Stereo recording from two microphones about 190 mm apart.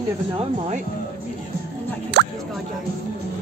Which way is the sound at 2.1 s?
65° right (ahead or behind).